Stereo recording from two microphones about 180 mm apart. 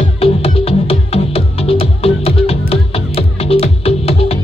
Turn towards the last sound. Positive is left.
turn(degrees=35)  # may be behind; listen again after turning